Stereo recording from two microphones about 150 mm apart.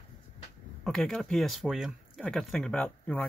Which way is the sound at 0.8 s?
Centre (ahead or behind).